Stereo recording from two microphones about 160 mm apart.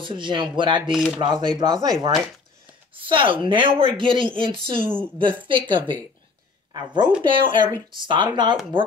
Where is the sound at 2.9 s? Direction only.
35° right (ahead or behind).